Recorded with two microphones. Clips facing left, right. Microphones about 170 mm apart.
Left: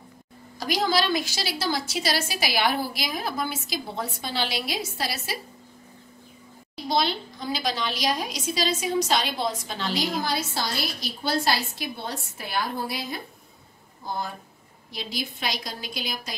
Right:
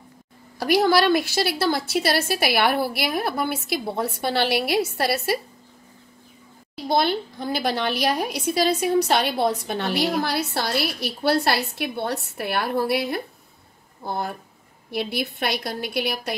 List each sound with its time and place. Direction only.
0.6 s a woman's voice: 60° right (ahead or behind)
6.9 s a woman's voice: 55° right (ahead or behind)